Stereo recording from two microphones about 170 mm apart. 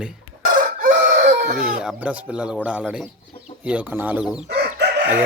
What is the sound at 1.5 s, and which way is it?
Speech, 5° right (ahead or behind).